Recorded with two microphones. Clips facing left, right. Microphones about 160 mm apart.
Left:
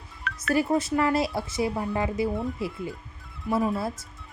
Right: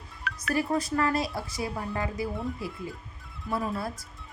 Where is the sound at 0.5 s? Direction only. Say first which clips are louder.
Left 4 dB; 25° left (ahead or behind).